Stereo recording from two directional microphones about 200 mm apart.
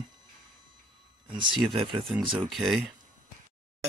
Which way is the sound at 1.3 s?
25° right (ahead or behind).